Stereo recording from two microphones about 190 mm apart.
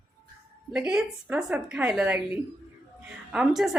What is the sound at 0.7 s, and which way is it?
A woman's voice, 5° right (ahead or behind).